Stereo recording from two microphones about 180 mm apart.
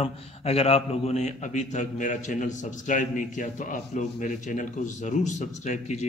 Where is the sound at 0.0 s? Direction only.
35° left (ahead or behind).